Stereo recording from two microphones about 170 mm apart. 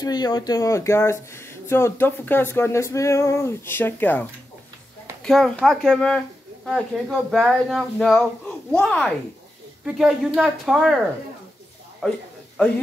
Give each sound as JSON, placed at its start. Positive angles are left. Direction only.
{"t": 0.0, "sound": "speech", "side_deg": 25}
{"t": 12.0, "sound": "speech", "side_deg": 5}